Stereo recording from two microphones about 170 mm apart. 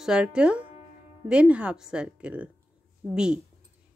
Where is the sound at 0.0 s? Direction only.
5° right (ahead or behind).